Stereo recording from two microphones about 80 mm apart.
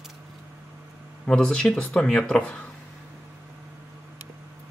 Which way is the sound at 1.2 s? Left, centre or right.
Centre.